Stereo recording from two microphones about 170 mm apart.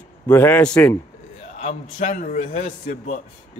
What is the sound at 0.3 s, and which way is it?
Speech, 10° left (ahead or behind).